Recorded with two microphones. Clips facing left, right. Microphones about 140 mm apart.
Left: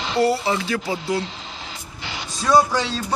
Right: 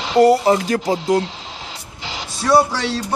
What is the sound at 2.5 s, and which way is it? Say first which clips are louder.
Speech: right 2 dB; 70° right (ahead or behind).